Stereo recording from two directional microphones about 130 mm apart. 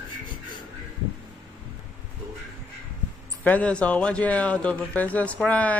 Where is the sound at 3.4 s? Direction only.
10° left (ahead or behind).